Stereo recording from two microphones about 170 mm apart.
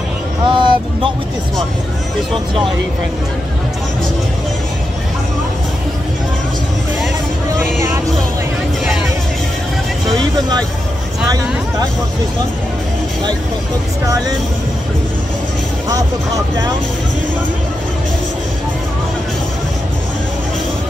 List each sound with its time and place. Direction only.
0.5 s speech: 30° right (ahead or behind)